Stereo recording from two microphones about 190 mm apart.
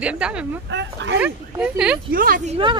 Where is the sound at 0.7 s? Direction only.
70° right (ahead or behind).